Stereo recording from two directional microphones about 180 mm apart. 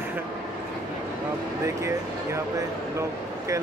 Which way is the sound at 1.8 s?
15° right (ahead or behind).